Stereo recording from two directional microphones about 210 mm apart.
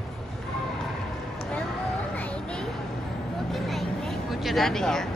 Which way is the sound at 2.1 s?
5° left (ahead or behind).